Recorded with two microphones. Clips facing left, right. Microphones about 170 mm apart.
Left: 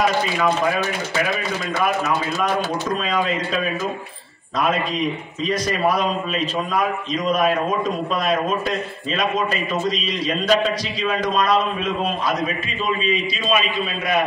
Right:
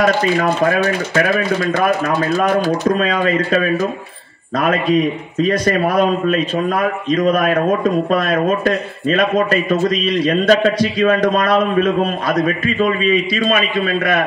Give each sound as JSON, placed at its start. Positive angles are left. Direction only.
{"t": 0.0, "sound": "a man's voice", "side_deg": -60}
{"t": 5.4, "sound": "a man's voice", "side_deg": -55}